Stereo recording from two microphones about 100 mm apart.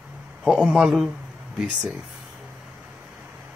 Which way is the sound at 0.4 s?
5° right (ahead or behind).